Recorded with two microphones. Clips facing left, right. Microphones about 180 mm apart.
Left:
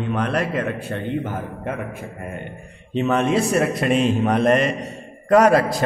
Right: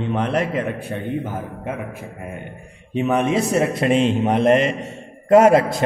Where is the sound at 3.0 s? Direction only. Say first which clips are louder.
Even; 15° right (ahead or behind).